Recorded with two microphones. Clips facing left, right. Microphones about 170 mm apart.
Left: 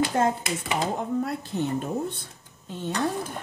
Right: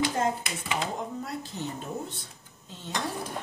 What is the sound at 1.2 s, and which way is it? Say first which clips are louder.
A woman's voice: left 7 dB; 55° left (ahead or behind).